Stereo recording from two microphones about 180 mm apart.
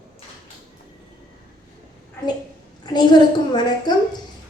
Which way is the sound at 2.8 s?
25° left (ahead or behind).